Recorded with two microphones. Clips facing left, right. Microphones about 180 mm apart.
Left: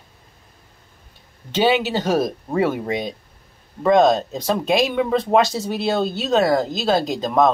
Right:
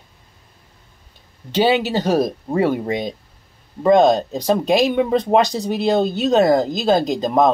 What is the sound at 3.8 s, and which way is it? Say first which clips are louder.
Speech: right 2 dB; 15° right (ahead or behind).